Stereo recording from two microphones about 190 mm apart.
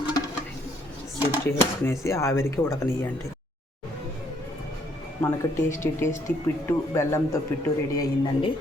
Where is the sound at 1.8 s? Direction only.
15° left (ahead or behind).